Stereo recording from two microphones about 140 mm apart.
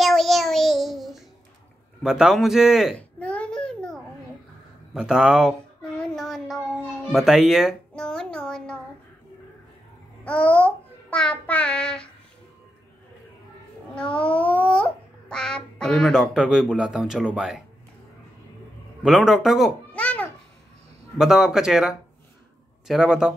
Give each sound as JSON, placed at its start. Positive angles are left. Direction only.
{"t": 0.0, "sound": "child singing", "side_deg": 0}
{"t": 2.0, "sound": "speech", "side_deg": -5}
{"t": 3.0, "sound": "a sound", "side_deg": 10}
{"t": 4.9, "sound": "speech", "side_deg": -5}
{"t": 5.8, "sound": "a sound", "side_deg": 5}
{"t": 7.1, "sound": "music", "side_deg": -5}
{"t": 10.2, "sound": "babbling", "side_deg": 10}
{"t": 13.9, "sound": "babbling", "side_deg": 10}
{"t": 19.0, "sound": "speech", "side_deg": 0}
{"t": 19.9, "sound": "babbling", "side_deg": 10}
{"t": 21.2, "sound": "speech", "side_deg": -5}